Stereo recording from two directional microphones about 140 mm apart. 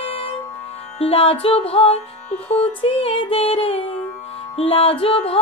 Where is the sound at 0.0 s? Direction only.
45° left (ahead or behind).